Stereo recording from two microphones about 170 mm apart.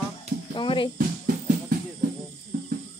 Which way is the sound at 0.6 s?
30° left (ahead or behind).